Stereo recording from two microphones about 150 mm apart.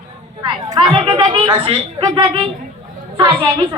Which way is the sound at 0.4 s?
30° right (ahead or behind).